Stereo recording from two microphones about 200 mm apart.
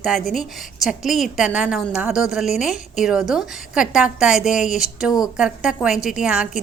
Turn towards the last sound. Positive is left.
turn(degrees=-5)  # may be behind; listen again after turning